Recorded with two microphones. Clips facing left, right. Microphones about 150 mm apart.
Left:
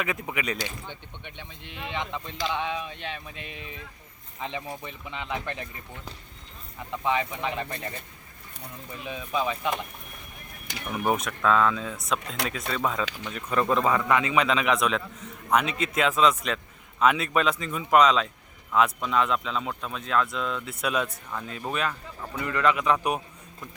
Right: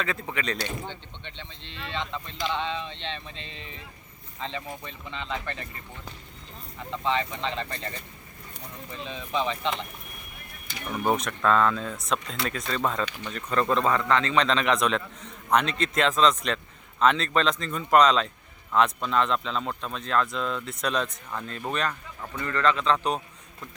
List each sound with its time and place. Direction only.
0.0 s speech: 15° left (ahead or behind)
10.8 s speech: 5° left (ahead or behind)